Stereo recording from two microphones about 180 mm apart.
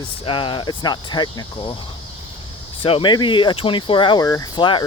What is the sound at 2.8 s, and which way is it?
Speech, 30° left (ahead or behind).